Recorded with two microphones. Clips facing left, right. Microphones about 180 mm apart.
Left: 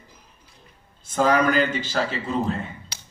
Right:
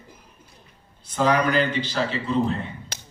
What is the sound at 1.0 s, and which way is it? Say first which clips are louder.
A man's voice: left 1 dB; 45° left (ahead or behind).